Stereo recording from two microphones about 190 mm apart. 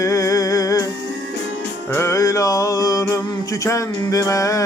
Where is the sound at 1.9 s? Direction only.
15° left (ahead or behind).